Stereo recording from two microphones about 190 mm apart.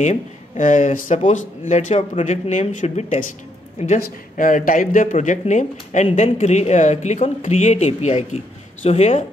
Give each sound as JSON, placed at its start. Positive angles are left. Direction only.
{"t": 0.0, "sound": "speech", "side_deg": 40}